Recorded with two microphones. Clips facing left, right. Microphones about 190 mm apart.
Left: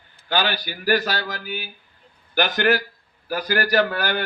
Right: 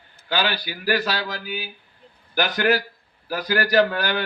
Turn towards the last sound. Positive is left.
turn(degrees=45)  # may be behind; listen again after turning